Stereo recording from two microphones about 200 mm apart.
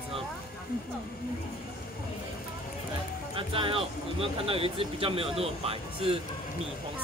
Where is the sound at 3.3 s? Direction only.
25° right (ahead or behind).